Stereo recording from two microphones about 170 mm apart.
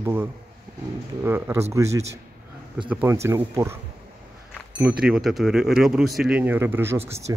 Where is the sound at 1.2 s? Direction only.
15° right (ahead or behind).